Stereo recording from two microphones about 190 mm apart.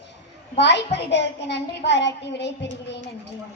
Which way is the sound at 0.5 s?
65° left (ahead or behind).